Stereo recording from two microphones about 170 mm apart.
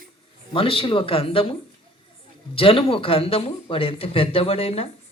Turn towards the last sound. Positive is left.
turn(degrees=35)  # may be behind; listen again after turning